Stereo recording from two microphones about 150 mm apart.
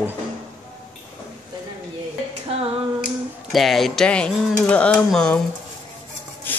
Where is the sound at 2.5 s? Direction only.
40° right (ahead or behind).